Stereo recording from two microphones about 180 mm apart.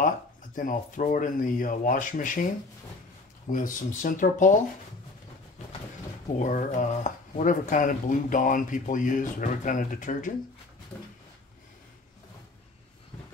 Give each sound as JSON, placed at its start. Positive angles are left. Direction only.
{"t": 0.6, "sound": "speech", "side_deg": 45}
{"t": 3.5, "sound": "speech", "side_deg": 45}
{"t": 6.2, "sound": "speech", "side_deg": 45}